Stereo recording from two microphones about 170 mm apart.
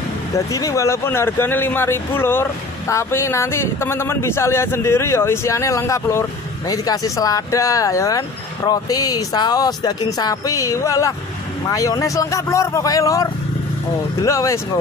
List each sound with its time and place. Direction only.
0.5 s a man's voice: 20° left (ahead or behind)